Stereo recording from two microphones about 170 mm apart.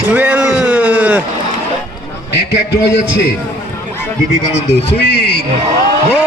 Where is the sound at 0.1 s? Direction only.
10° right (ahead or behind).